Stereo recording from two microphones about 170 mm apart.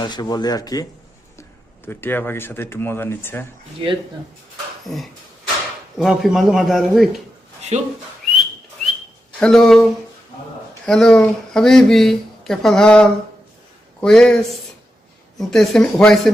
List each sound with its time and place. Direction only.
0.0 s speech: 25° left (ahead or behind)
4.9 s speech: centre (ahead or behind)
7.7 s speech: 40° right (ahead or behind)
8.2 s whistling: centre (ahead or behind)
9.4 s speech: centre (ahead or behind)
15.4 s speech: centre (ahead or behind)